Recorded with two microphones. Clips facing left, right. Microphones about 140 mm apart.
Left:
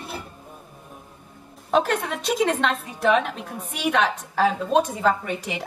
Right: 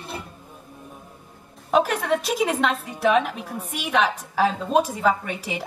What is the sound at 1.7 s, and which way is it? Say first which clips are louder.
A woman's voice: right 2 dB; 5° right (ahead or behind).